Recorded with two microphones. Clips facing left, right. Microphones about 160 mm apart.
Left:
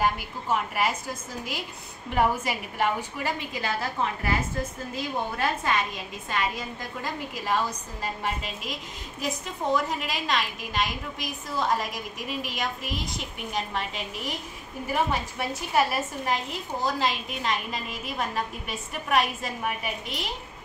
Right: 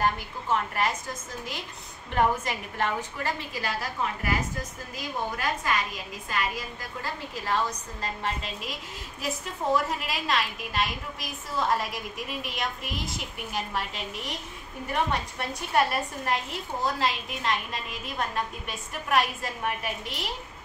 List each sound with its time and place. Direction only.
0.0 s a woman's voice: 10° left (ahead or behind)
4.9 s a woman's voice: 25° left (ahead or behind)
7.3 s a woman's voice: 10° left (ahead or behind)
9.2 s a woman's voice: centre (ahead or behind)